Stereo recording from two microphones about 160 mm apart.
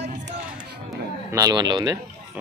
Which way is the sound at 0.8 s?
20° right (ahead or behind).